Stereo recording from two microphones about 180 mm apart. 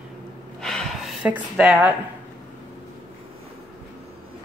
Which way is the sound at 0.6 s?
Centre (ahead or behind).